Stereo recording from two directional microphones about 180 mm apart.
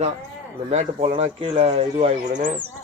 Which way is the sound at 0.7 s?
40° right (ahead or behind).